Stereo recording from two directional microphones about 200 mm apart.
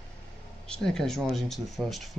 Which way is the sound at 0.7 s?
5° left (ahead or behind).